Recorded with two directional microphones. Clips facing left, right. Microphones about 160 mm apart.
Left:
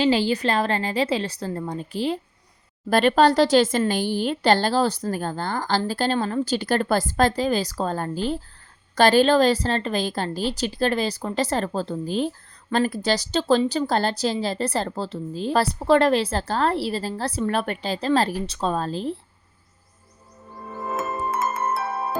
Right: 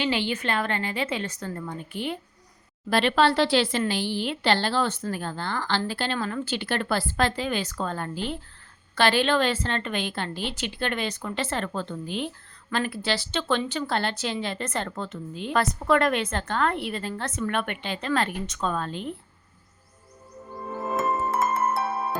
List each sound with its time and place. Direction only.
0.0 s a woman's voice: 35° left (ahead or behind)
2.9 s a woman's voice: 45° left (ahead or behind)